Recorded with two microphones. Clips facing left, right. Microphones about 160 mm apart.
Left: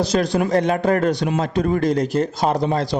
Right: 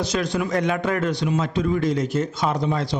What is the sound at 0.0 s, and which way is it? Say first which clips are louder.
A man's voice: left 5 dB; 35° left (ahead or behind).